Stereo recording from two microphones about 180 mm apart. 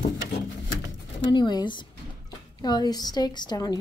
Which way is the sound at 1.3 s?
25° left (ahead or behind).